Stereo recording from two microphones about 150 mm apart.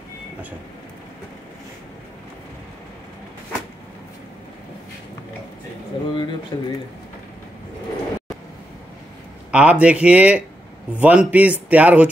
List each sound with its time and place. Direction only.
6.5 s speech: 25° left (ahead or behind)
9.5 s speech: 5° right (ahead or behind)